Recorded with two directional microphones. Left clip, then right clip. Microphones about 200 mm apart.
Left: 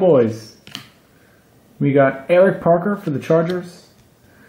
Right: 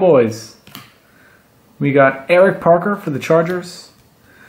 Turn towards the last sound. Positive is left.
turn(degrees=0)  # may be behind; listen again after turning